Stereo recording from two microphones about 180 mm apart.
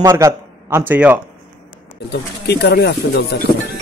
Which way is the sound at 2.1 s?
65° left (ahead or behind).